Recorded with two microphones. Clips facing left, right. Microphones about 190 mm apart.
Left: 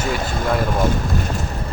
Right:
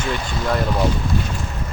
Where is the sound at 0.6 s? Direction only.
50° left (ahead or behind).